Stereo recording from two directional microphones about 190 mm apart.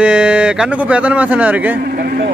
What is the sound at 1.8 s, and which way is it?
Speech, 50° right (ahead or behind).